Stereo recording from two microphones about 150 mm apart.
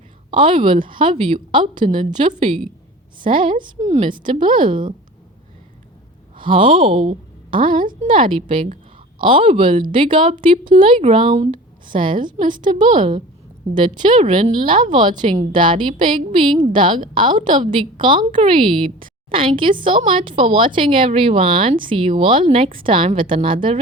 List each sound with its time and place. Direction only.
0.3 s a woman's voice: 35° right (ahead or behind)
2.0 s a woman's voice: 55° right (ahead or behind)
2.3 s a woman's voice: 35° right (ahead or behind)
3.8 s a woman's voice: 50° right (ahead or behind)
4.1 s a woman's voice: 30° right (ahead or behind)
6.4 s a woman's voice: 35° right (ahead or behind)
18.0 s a woman's voice: 35° right (ahead or behind)